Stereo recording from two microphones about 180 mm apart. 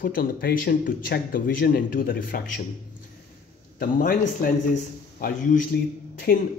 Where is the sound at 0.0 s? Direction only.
55° left (ahead or behind).